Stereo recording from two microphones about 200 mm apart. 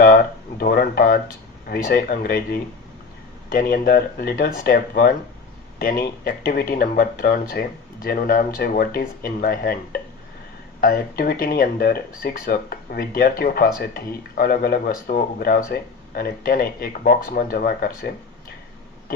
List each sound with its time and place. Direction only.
0.0 s speech: 45° left (ahead or behind)